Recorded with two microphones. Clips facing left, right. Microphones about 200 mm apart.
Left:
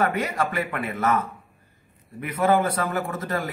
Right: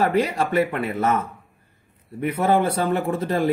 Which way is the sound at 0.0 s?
30° right (ahead or behind).